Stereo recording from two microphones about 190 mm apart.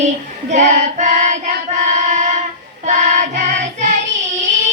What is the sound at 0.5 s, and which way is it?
Child singing, 40° right (ahead or behind).